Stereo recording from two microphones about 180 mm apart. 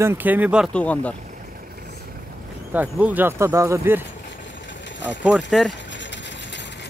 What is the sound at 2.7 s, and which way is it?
Speech, 10° right (ahead or behind).